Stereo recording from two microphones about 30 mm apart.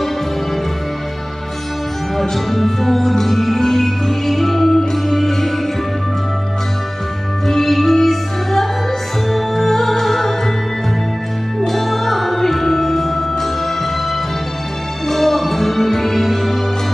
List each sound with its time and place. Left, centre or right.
2.3 s music: centre
7.4 s music: centre
11.6 s music: centre
15.0 s music: centre